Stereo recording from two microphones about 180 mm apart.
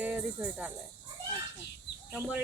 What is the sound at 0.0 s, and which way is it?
Speech, 10° right (ahead or behind).